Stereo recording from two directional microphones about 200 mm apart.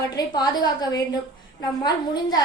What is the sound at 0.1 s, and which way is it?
A woman's voice, 20° left (ahead or behind).